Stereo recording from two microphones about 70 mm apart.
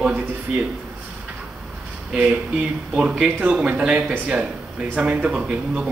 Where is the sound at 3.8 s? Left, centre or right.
Centre.